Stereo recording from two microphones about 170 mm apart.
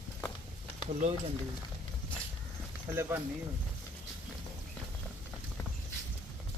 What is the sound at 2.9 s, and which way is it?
Speech, 15° right (ahead or behind).